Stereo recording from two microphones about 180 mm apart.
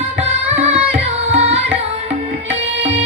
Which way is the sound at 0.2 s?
40° right (ahead or behind).